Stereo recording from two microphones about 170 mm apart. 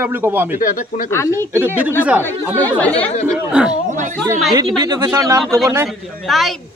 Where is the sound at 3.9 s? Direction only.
45° right (ahead or behind).